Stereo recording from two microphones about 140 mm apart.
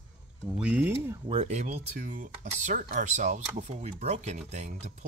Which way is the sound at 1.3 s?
50° right (ahead or behind).